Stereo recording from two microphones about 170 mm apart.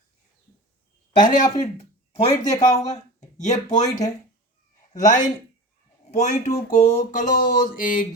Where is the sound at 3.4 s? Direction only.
45° left (ahead or behind).